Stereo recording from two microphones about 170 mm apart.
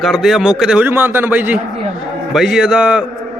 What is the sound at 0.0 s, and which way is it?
A man's voice, centre (ahead or behind).